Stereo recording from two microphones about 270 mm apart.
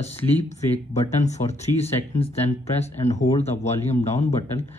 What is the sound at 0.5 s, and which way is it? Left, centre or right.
Speech, left.